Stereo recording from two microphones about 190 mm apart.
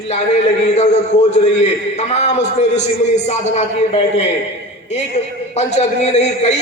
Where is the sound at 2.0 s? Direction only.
35° left (ahead or behind).